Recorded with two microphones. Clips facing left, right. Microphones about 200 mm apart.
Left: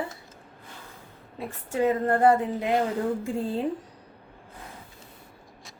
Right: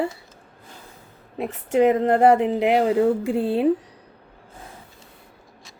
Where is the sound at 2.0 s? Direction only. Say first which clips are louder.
Right 5 dB; 75° right (ahead or behind).